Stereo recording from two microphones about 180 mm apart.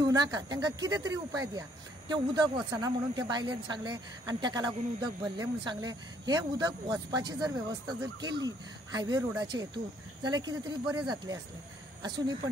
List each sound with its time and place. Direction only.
0.0 s speech: 20° right (ahead or behind)